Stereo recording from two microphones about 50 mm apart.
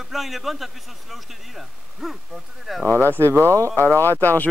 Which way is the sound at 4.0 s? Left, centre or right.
Left.